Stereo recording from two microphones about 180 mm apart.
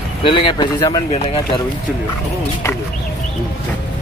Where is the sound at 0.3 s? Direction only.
30° left (ahead or behind).